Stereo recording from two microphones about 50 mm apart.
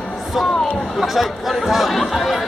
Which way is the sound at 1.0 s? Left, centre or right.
Centre.